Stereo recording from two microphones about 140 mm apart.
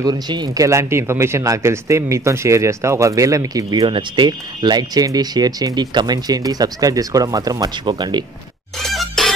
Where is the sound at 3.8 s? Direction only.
35° right (ahead or behind).